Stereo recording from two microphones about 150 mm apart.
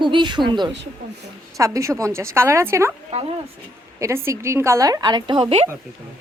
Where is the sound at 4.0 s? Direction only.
20° right (ahead or behind); by 5.7 s 40° right (ahead or behind).